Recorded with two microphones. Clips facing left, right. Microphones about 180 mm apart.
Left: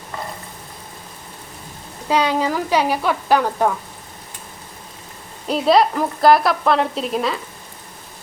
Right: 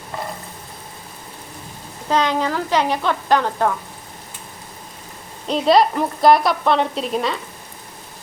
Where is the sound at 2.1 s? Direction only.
10° left (ahead or behind).